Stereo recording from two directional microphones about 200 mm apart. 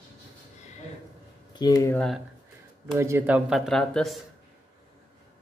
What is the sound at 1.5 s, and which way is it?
Speech, 20° left (ahead or behind).